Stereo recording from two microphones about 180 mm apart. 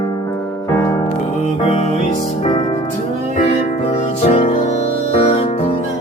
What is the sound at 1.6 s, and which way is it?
Music, 40° left (ahead or behind).